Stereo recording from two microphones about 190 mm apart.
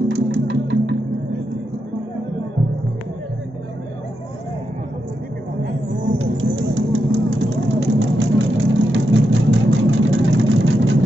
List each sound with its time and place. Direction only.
0.1 s music: 70° right (ahead or behind)
6.1 s vehicle: 85° right